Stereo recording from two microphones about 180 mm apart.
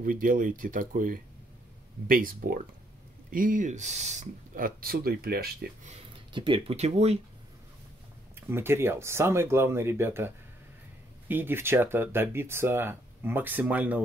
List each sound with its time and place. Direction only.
0.0 s speech: 50° right (ahead or behind)
5.9 s speech: 30° right (ahead or behind)
8.4 s speech: 15° right (ahead or behind)